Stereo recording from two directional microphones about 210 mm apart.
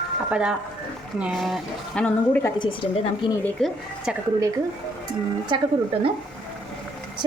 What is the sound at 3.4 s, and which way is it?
Speech, centre (ahead or behind).